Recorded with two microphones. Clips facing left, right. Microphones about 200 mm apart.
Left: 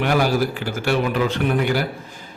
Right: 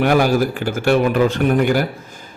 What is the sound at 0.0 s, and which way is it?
A man's voice, 45° right (ahead or behind).